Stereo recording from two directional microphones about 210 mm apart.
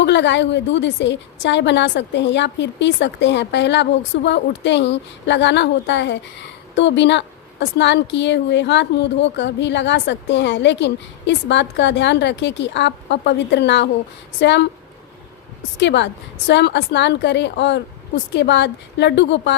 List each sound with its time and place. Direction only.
0.0 s a woman's voice: 55° left (ahead or behind)
15.8 s a woman's voice: 55° left (ahead or behind)